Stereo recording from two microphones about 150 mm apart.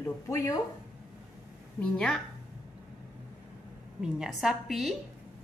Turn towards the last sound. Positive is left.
turn(degrees=0)  # may be behind; listen again after turning